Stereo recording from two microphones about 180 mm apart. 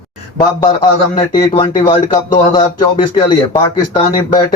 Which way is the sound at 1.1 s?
25° left (ahead or behind).